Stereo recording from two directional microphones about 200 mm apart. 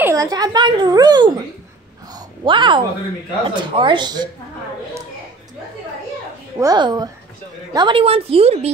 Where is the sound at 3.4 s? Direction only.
25° right (ahead or behind).